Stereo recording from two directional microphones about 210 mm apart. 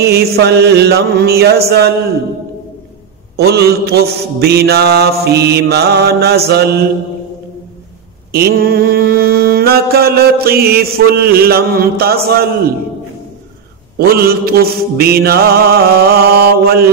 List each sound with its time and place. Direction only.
0.0 s mantra: 50° right (ahead or behind)
3.3 s mantra: 50° right (ahead or behind)
8.3 s mantra: 45° right (ahead or behind)
13.9 s mantra: 45° right (ahead or behind)